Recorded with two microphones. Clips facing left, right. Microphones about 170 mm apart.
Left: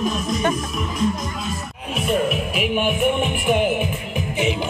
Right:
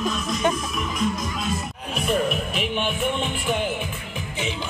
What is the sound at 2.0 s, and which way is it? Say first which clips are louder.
Music: left 2 dB; centre (ahead or behind).